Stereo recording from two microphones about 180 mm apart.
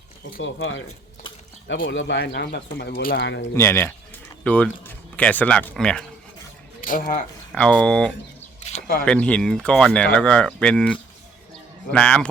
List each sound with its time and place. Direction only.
0.4 s speech: 90° left
1.9 s speech: 85° left; by 3.2 s 55° left (ahead or behind)
3.2 s speech: 80° left
3.5 s speech: 15° left (ahead or behind)
6.8 s speech: 50° left (ahead or behind)
7.5 s speech: 5° left (ahead or behind)